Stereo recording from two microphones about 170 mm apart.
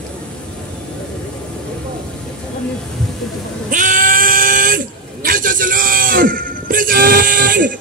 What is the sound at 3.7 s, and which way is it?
Sheep, 50° right (ahead or behind).